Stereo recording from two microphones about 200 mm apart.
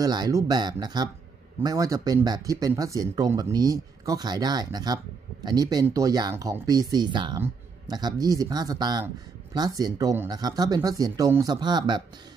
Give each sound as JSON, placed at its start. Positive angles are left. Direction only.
{"t": 0.0, "sound": "speech", "side_deg": -20}